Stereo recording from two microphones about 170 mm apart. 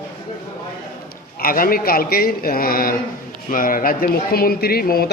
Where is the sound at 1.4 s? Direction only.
60° left (ahead or behind).